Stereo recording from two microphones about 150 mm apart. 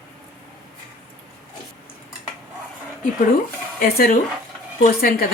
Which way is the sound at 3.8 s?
75° left (ahead or behind).